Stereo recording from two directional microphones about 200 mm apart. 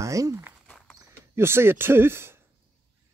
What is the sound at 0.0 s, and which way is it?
Speech, 15° right (ahead or behind).